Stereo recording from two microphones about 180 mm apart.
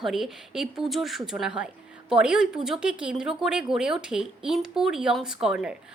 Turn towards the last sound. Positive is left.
turn(degrees=-5)  # may be behind; listen again after turning